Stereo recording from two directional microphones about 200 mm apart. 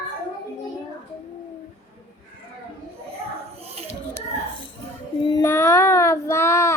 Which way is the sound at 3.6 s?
30° right (ahead or behind).